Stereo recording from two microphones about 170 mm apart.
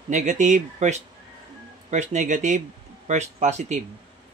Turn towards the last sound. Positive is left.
turn(degrees=-45)  # may be behind; listen again after turning